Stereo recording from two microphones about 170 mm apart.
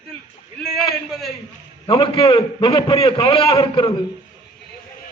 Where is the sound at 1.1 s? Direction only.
Centre (ahead or behind).